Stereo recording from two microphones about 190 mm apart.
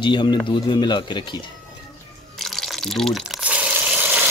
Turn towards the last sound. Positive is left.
turn(degrees=-10)  # may be behind; listen again after turning